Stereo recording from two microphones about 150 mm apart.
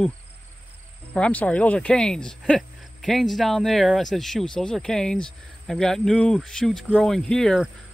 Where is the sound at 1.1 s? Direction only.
10° left (ahead or behind).